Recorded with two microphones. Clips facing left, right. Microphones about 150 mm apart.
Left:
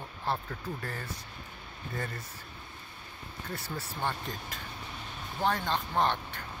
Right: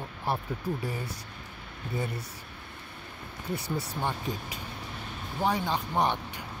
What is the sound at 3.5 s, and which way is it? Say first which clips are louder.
Speech: right 7 dB; 15° right (ahead or behind).